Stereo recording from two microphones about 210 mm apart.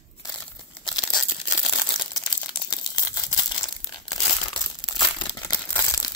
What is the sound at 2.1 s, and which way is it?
Crumpling, 20° left (ahead or behind).